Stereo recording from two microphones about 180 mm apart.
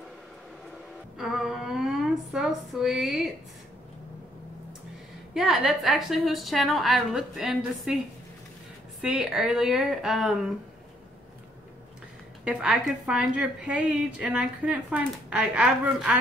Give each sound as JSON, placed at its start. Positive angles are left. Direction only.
{"t": 1.1, "sound": "a sound", "side_deg": 0}
{"t": 5.3, "sound": "a woman's voice", "side_deg": 0}
{"t": 9.0, "sound": "a woman's voice", "side_deg": -5}
{"t": 12.4, "sound": "a woman's voice", "side_deg": -5}